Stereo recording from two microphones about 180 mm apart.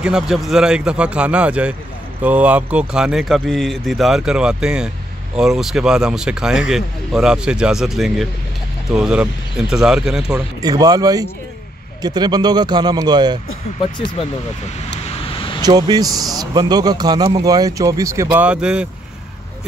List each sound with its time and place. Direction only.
0.0 s speech: 5° right (ahead or behind)
10.6 s speech: 20° right (ahead or behind)
15.0 s a sound: 30° left (ahead or behind)
15.6 s speech: 20° right (ahead or behind); by 18.9 s 5° right (ahead or behind)